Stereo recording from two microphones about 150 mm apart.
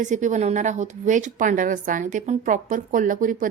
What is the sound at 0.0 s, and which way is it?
A woman's voice, 55° right (ahead or behind).